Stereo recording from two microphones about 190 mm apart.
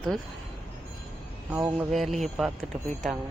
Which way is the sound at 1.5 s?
10° right (ahead or behind).